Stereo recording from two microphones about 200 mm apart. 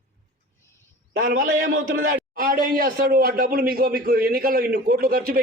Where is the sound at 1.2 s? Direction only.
45° right (ahead or behind).